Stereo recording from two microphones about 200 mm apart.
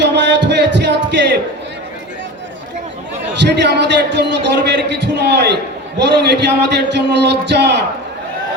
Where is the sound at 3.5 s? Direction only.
60° right (ahead or behind).